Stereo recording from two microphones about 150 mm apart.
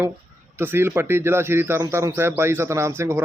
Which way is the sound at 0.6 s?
15° right (ahead or behind).